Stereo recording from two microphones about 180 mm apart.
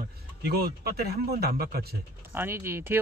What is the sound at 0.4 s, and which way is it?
A man's voice, 60° right (ahead or behind).